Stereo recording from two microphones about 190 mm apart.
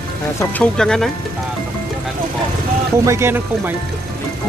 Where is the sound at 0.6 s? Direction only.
5° left (ahead or behind).